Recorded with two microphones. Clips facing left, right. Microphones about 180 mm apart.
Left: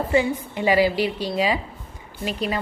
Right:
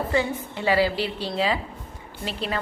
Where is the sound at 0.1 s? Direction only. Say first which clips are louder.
Left 4 dB; 15° left (ahead or behind).